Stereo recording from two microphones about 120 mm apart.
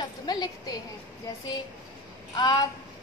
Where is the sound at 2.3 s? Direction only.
35° left (ahead or behind).